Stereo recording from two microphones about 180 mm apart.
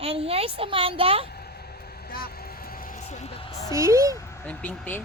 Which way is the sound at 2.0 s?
55° left (ahead or behind).